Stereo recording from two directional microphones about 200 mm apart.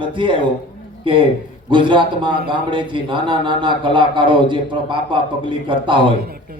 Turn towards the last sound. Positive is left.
turn(degrees=-25)  # may be behind; listen again after turning